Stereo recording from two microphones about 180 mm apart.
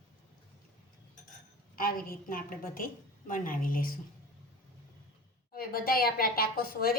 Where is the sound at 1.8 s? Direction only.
55° left (ahead or behind).